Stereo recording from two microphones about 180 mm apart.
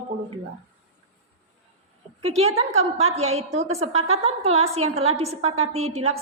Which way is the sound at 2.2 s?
35° right (ahead or behind).